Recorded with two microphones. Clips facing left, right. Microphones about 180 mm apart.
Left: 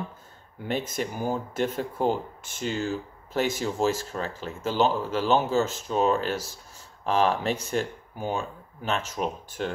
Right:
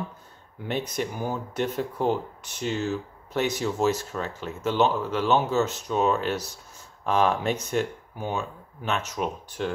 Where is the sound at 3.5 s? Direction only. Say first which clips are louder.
Right 1 dB; centre (ahead or behind).